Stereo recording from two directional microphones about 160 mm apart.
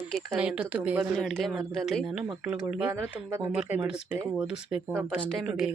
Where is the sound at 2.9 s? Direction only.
15° right (ahead or behind).